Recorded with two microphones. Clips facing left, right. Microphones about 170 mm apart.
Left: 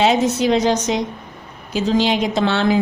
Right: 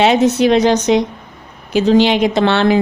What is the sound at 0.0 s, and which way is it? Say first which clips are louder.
A woman's voice: right 4 dB; 70° right (ahead or behind).